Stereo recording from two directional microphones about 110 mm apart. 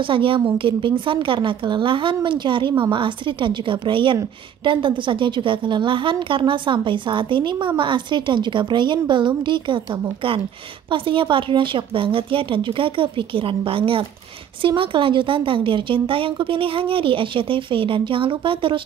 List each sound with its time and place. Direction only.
0.0 s a woman's voice: 50° right (ahead or behind)